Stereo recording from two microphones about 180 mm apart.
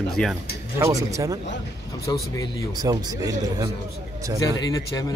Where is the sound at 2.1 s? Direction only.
20° left (ahead or behind).